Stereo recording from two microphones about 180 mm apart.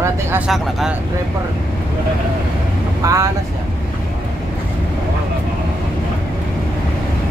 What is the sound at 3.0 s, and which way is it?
Speech, 15° right (ahead or behind).